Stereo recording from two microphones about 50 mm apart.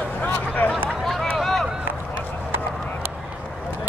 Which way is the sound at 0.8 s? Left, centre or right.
Centre.